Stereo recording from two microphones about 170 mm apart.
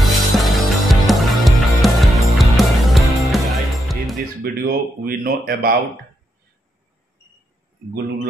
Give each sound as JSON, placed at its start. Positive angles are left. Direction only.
{"t": 0.4, "sound": "music", "side_deg": 0}
{"t": 4.4, "sound": "speech", "side_deg": -60}
{"t": 7.9, "sound": "speech", "side_deg": -65}